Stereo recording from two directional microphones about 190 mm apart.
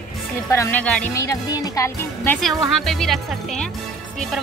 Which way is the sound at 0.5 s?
15° left (ahead or behind).